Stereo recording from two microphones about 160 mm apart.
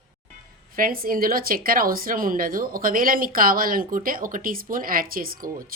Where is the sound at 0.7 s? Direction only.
65° right (ahead or behind).